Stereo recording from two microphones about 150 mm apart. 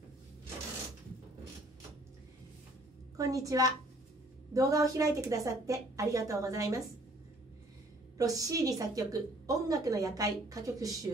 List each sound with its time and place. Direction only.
3.2 s a woman's voice: 25° right (ahead or behind)
8.2 s a woman's voice: 25° right (ahead or behind)